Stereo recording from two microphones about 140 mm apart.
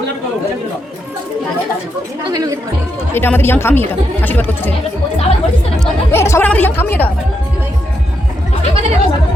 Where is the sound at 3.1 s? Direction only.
15° left (ahead or behind).